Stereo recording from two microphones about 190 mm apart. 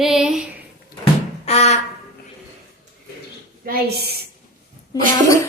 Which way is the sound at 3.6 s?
55° right (ahead or behind).